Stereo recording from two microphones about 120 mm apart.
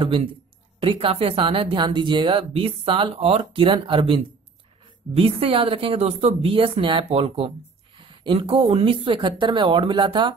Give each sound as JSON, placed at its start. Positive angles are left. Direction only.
{"t": 0.0, "sound": "speech", "side_deg": -50}